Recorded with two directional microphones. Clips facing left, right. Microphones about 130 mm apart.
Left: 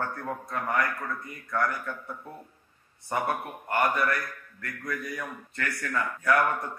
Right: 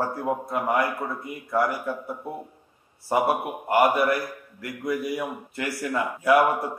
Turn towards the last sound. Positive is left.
turn(degrees=-15)  # may be behind; listen again after turning